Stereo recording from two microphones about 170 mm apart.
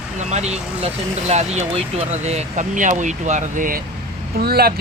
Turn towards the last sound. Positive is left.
turn(degrees=-65)  # may be behind; listen again after turning